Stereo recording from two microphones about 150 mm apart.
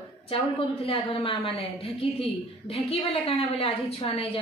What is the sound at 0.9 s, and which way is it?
A woman's voice, 40° left (ahead or behind).